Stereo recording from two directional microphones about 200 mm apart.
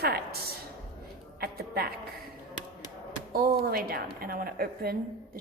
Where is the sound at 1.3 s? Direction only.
50° right (ahead or behind).